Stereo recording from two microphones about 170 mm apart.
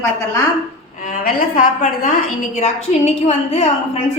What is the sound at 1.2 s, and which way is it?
Speech, 55° left (ahead or behind).